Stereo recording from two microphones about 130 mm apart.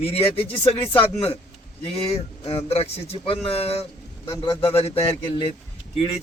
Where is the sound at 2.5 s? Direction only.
50° left (ahead or behind).